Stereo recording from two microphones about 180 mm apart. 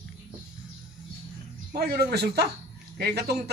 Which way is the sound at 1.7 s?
60° right (ahead or behind).